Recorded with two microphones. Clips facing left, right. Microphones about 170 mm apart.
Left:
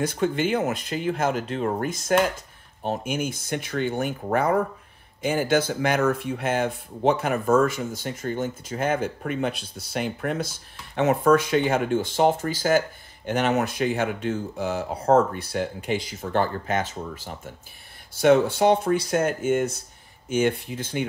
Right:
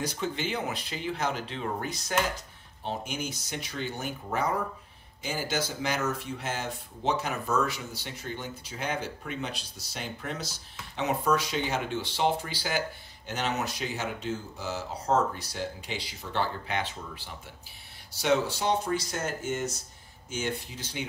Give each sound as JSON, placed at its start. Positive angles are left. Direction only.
{"t": 0.0, "sound": "speech", "side_deg": 50}